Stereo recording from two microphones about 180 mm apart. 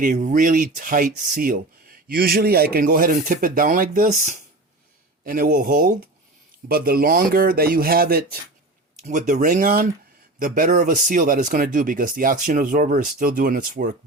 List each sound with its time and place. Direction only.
0.0 s speech: 45° right (ahead or behind)
9.0 s speech: 45° right (ahead or behind)